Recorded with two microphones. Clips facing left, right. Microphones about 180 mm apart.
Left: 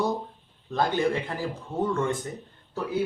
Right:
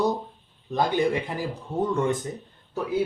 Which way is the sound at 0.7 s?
15° right (ahead or behind).